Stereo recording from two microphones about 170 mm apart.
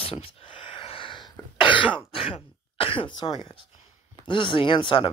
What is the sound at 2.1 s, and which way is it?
Speech, 35° left (ahead or behind).